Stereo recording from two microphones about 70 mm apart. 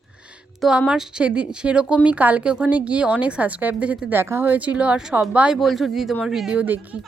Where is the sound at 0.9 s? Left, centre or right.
Centre.